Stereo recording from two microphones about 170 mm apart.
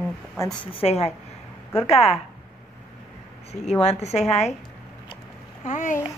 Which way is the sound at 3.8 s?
40° left (ahead or behind).